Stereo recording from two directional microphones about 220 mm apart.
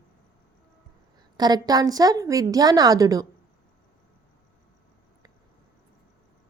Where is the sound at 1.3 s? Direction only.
20° right (ahead or behind).